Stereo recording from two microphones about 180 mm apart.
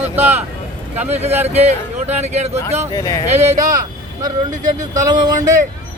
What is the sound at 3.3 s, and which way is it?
Speech, 35° right (ahead or behind).